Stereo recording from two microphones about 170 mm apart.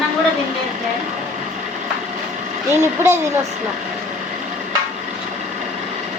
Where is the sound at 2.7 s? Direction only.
15° right (ahead or behind).